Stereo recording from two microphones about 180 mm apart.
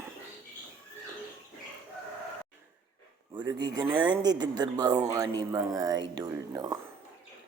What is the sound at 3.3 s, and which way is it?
Speech, 25° right (ahead or behind).